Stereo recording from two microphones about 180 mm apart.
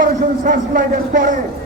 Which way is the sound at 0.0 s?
50° right (ahead or behind).